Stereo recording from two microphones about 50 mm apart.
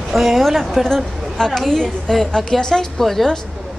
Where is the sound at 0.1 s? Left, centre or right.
Centre.